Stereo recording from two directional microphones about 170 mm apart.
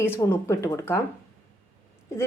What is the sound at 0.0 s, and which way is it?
Speech, 15° left (ahead or behind).